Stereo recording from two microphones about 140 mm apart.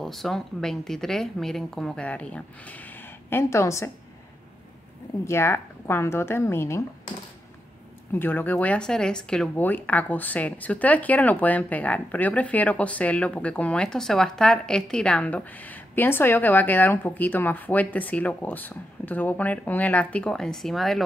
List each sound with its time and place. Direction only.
0.0 s speech: centre (ahead or behind); by 3.9 s 20° left (ahead or behind)
5.2 s speech: 20° left (ahead or behind)
8.1 s speech: 15° left (ahead or behind)